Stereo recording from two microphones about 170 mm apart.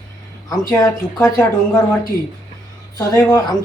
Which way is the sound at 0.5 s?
20° left (ahead or behind).